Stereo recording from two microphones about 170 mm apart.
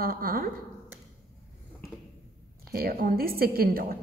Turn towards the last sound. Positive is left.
turn(degrees=-60)  # may be behind; listen again after turning